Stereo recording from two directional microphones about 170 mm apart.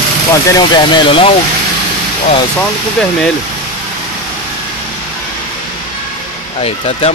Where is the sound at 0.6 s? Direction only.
25° left (ahead or behind).